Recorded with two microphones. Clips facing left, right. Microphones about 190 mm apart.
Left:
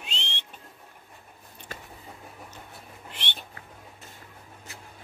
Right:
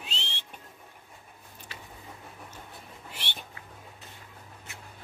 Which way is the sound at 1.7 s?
45° left (ahead or behind).